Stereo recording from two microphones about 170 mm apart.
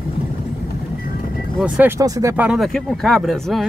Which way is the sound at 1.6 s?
5° right (ahead or behind).